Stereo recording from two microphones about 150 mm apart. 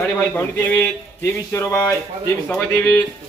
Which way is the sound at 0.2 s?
10° left (ahead or behind).